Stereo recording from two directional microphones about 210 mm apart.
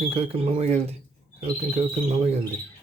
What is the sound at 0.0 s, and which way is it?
Speech, 30° right (ahead or behind).